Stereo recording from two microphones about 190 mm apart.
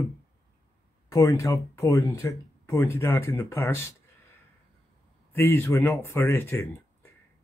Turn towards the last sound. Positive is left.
turn(degrees=15)  # may be behind; listen again after turning